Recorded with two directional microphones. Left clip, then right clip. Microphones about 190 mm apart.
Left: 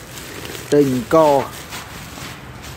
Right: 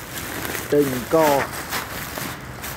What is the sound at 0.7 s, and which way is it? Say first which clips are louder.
Speech: left 4 dB; 40° left (ahead or behind).